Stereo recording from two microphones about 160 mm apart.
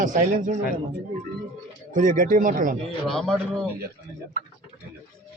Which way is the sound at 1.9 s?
55° right (ahead or behind).